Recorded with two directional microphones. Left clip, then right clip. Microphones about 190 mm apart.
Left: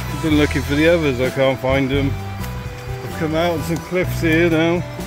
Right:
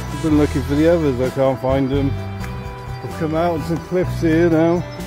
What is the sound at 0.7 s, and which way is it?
Speech, 15° right (ahead or behind).